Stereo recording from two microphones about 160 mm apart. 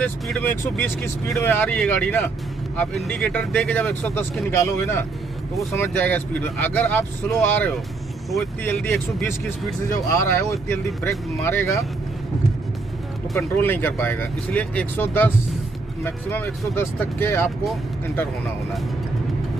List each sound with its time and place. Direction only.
0.0 s speech: 10° left (ahead or behind)
13.3 s speech: 15° left (ahead or behind)